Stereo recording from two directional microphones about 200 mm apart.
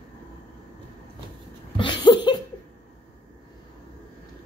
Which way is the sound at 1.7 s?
25° left (ahead or behind).